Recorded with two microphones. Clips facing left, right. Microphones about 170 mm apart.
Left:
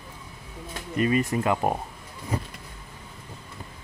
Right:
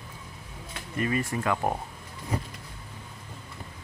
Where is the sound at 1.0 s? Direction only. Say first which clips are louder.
Left 5 dB; 20° left (ahead or behind).